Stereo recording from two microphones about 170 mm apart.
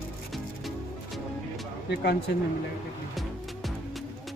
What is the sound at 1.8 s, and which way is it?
Speech, 75° left (ahead or behind).